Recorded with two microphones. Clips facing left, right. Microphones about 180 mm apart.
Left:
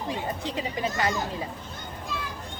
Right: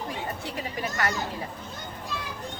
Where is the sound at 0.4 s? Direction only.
20° left (ahead or behind).